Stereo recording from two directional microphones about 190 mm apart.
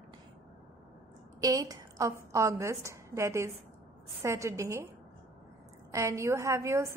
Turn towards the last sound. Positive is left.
turn(degrees=-15)  # may be behind; listen again after turning